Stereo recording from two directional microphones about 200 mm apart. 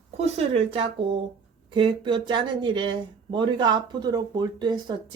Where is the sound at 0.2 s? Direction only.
30° right (ahead or behind).